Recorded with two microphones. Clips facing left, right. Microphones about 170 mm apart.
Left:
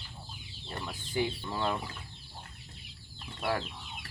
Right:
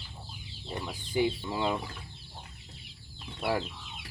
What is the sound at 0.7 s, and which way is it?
Speech, 15° right (ahead or behind).